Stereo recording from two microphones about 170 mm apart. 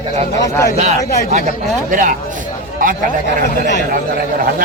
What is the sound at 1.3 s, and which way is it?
Speech, 45° right (ahead or behind).